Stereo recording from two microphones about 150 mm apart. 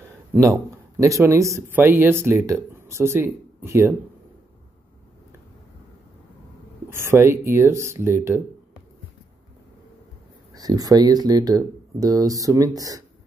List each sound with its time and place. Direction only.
0.4 s speech: 20° right (ahead or behind)
6.9 s speech: 15° right (ahead or behind)
10.5 s speech: 25° right (ahead or behind)